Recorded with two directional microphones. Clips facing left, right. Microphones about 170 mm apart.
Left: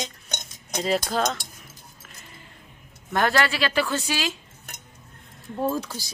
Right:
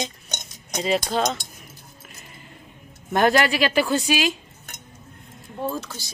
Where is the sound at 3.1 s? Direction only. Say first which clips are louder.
Right 4 dB; 15° right (ahead or behind).